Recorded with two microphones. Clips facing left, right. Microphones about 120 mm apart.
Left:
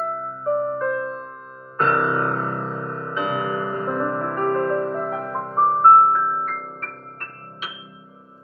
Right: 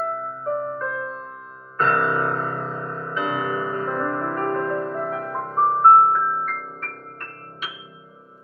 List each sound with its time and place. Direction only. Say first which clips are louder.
0.5 s music: left 5 dB; 10° left (ahead or behind)
3.8 s music: left 1 dB; 15° left (ahead or behind)
5.9 s music: even; centre (ahead or behind)